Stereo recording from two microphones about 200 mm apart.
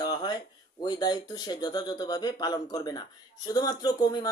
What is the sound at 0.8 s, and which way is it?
Speech, 20° left (ahead or behind).